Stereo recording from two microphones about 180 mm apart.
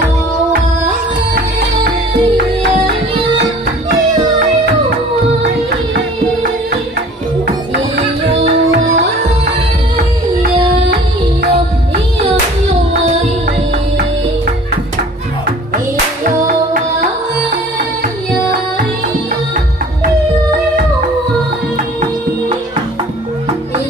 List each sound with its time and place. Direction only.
8.7 s music: 40° right (ahead or behind)